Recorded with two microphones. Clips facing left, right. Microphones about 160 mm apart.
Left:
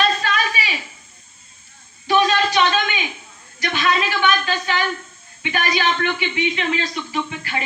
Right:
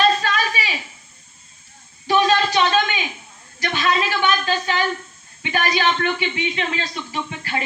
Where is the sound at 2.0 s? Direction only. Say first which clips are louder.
Even; 30° right (ahead or behind).